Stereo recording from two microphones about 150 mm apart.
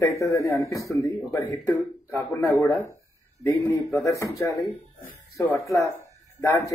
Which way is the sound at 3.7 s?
20° left (ahead or behind).